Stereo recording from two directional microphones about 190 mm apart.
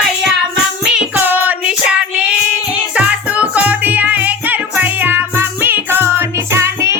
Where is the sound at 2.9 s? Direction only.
5° right (ahead or behind).